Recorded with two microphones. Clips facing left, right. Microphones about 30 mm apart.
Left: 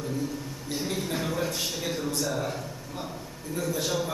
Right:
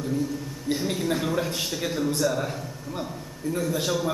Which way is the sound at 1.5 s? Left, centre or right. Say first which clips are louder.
Right 2 dB; centre.